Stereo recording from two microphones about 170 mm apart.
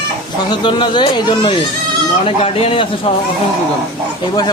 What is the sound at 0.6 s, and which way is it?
A man's voice, 25° left (ahead or behind).